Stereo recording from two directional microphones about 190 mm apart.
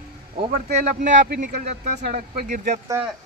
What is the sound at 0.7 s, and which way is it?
Speech, 40° right (ahead or behind).